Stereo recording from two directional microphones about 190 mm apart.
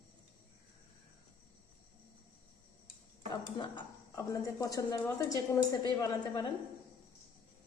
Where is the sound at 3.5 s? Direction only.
25° left (ahead or behind).